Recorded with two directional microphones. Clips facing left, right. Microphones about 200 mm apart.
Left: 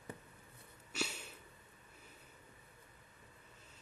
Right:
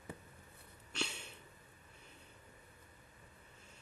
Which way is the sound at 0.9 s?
5° left (ahead or behind).